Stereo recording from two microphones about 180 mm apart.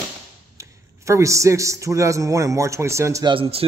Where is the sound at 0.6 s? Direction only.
15° right (ahead or behind).